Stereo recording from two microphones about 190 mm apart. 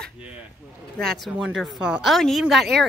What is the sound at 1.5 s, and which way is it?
A woman's voice, 5° right (ahead or behind).